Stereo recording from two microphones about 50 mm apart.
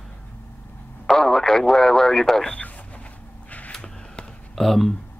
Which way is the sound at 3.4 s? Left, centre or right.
Left.